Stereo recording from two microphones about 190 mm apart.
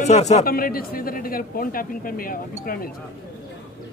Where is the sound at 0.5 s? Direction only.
50° left (ahead or behind).